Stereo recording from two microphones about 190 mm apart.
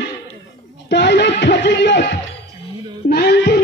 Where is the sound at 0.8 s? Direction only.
65° left (ahead or behind).